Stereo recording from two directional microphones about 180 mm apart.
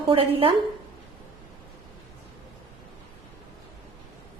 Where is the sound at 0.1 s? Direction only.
30° right (ahead or behind).